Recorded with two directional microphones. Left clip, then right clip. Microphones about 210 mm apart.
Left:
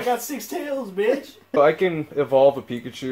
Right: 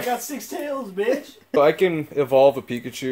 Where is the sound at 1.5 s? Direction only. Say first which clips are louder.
Even; 25° right (ahead or behind).